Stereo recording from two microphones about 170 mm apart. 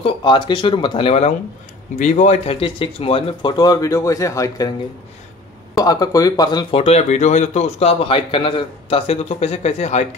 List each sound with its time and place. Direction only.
0.0 s speech: 25° left (ahead or behind)
5.8 s speech: 20° left (ahead or behind); by 10.0 s 40° left (ahead or behind)